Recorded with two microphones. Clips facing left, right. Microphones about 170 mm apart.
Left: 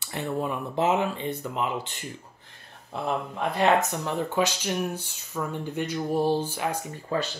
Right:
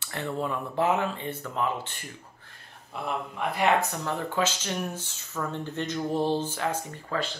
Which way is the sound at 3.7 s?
20° left (ahead or behind).